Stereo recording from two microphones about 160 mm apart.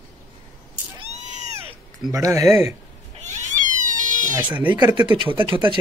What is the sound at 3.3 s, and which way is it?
Cat, 50° right (ahead or behind).